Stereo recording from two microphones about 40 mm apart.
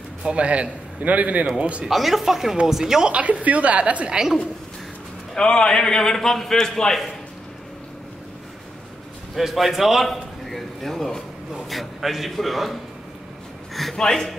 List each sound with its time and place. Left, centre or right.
0.2 s a man's voice: right
0.5 s a woman's voice: right
1.9 s a man's voice: centre
3.1 s a woman's voice: right
5.3 s a man's voice: left
9.3 s a man's voice: centre
10.0 s a man's voice: centre
13.9 s a man's voice: centre